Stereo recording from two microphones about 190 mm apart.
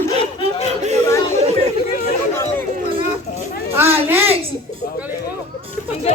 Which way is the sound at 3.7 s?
10° right (ahead or behind).